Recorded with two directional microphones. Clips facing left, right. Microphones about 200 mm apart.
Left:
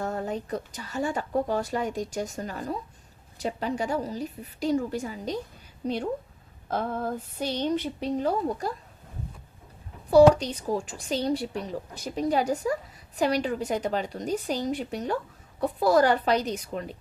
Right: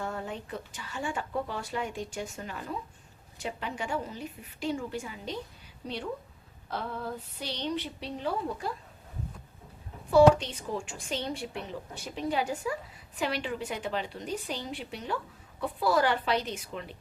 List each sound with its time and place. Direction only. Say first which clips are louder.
0.0 s speech: left 6 dB; 40° left (ahead or behind)
10.1 s speech: left 3 dB; 40° left (ahead or behind)